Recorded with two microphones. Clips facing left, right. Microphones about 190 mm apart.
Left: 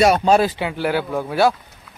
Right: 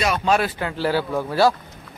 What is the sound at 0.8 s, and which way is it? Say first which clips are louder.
Speech: even; centre (ahead or behind).